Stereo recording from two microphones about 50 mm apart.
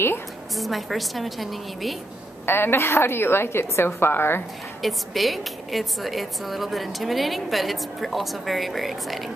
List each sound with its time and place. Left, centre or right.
0.6 s a woman's voice: centre
2.4 s a woman's voice: left
4.8 s a woman's voice: centre